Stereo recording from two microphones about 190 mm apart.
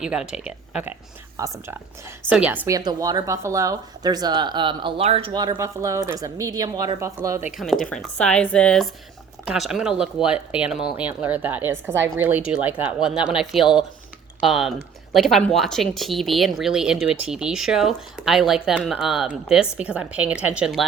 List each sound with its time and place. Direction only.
0.0 s speech: 5° right (ahead or behind)
7.5 s speech: centre (ahead or behind)